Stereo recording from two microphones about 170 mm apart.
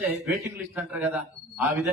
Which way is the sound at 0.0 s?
15° right (ahead or behind).